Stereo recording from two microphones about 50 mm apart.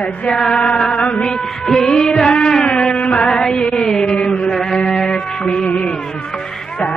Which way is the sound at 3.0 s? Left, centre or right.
Left.